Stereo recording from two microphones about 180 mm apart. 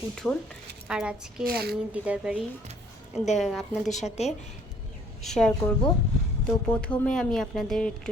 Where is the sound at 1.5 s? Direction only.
60° right (ahead or behind).